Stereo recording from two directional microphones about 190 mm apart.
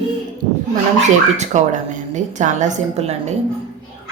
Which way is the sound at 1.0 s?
40° right (ahead or behind).